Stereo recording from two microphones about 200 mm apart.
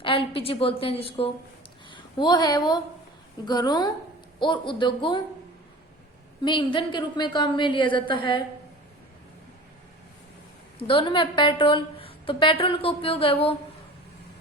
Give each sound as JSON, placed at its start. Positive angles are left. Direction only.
{"t": 0.0, "sound": "a woman's voice", "side_deg": 25}
{"t": 6.4, "sound": "a woman's voice", "side_deg": 25}
{"t": 10.8, "sound": "a woman's voice", "side_deg": 25}